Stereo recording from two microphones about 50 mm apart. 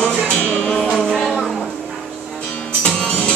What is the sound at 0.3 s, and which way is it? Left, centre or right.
Music, left.